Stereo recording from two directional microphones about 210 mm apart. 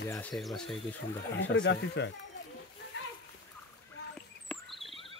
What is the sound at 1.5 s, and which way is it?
Speech, 55° left (ahead or behind).